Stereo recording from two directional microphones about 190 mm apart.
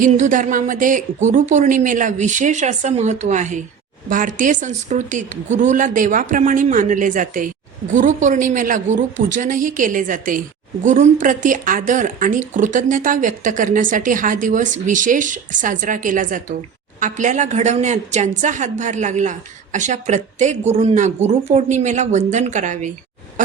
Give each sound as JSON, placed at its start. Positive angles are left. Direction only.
{"t": 0.0, "sound": "a woman's voice", "side_deg": -45}